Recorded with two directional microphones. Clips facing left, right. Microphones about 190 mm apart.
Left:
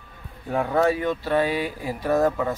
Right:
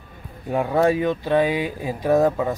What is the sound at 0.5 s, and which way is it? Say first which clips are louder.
Speech: right 2 dB; 15° right (ahead or behind).